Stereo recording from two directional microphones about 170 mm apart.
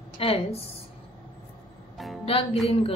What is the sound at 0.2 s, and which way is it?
Speech, 35° left (ahead or behind).